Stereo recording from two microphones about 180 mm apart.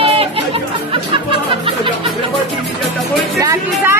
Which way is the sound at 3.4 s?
15° right (ahead or behind).